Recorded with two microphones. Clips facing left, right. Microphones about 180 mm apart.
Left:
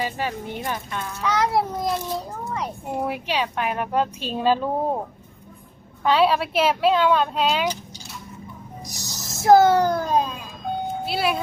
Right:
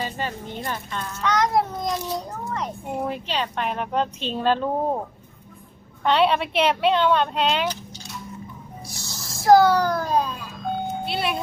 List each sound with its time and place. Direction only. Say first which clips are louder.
0.0 s a child's voice: left 2 dB; 10° left (ahead or behind)
9.0 s a sound: left 1 dB; 15° left (ahead or behind)
9.4 s a child's voice: left 1 dB; 20° left (ahead or behind)
11.0 s speech: left 5 dB; centre (ahead or behind)